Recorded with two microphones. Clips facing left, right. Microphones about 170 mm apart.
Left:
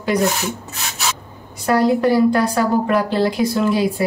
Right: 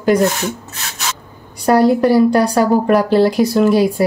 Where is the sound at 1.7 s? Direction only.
35° right (ahead or behind).